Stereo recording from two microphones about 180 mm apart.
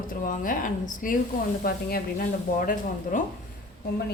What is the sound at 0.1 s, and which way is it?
Speech, 50° left (ahead or behind).